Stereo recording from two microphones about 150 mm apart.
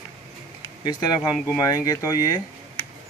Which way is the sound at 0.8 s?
25° left (ahead or behind).